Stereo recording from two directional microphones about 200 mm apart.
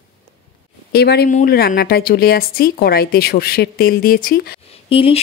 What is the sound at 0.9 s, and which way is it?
Speech, 50° left (ahead or behind).